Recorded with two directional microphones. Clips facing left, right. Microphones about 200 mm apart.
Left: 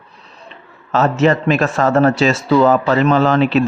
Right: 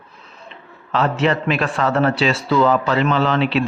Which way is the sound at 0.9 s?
45° left (ahead or behind).